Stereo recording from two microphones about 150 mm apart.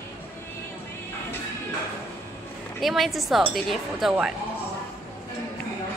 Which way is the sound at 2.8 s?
Centre (ahead or behind).